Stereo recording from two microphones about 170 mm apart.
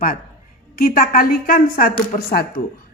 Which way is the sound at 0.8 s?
60° left (ahead or behind).